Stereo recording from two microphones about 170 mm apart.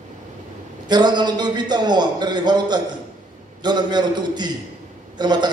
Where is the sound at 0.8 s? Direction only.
25° right (ahead or behind).